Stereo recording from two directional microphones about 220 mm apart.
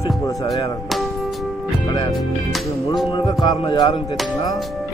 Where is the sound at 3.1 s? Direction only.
20° left (ahead or behind).